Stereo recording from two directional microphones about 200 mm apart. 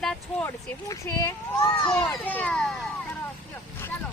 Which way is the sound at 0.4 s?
15° left (ahead or behind).